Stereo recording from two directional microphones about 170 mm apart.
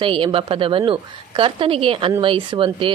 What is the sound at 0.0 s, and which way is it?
A woman's voice, 30° right (ahead or behind).